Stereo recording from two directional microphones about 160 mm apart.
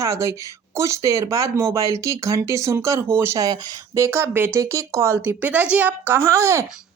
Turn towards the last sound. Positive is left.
turn(degrees=-15)  # may be behind; listen again after turning